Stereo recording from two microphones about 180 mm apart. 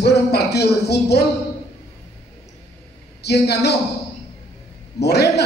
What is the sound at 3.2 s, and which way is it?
Speech, 65° left (ahead or behind).